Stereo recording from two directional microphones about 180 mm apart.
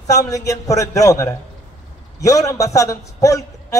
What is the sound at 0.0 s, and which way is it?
A man's voice, 20° left (ahead or behind).